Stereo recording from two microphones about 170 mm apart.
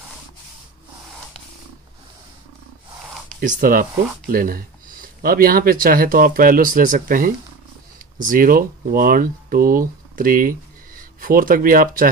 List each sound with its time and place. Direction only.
3.3 s speech: 50° right (ahead or behind)